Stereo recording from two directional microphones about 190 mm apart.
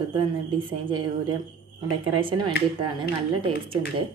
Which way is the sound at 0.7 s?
25° right (ahead or behind).